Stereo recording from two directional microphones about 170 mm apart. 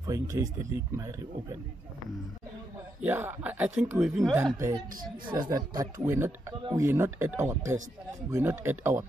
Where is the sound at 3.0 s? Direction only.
10° right (ahead or behind).